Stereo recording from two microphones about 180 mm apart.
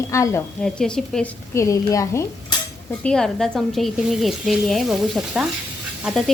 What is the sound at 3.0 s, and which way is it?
Speech, 5° left (ahead or behind).